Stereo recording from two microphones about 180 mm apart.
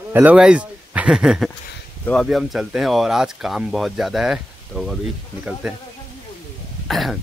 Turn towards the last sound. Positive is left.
turn(degrees=0)  # may be behind; listen again after turning